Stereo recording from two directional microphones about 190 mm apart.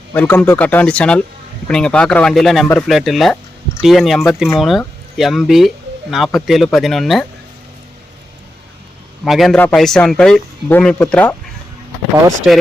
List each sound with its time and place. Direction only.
0.1 s speech: 10° left (ahead or behind)
9.2 s speech: centre (ahead or behind)
12.4 s speech: 5° right (ahead or behind)